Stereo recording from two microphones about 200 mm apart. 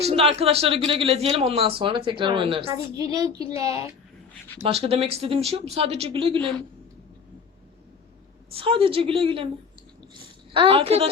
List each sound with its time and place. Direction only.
0.0 s a woman's voice: 30° right (ahead or behind)
4.6 s speech: 30° right (ahead or behind)
8.5 s speech: 25° right (ahead or behind)
10.5 s speech: 25° right (ahead or behind)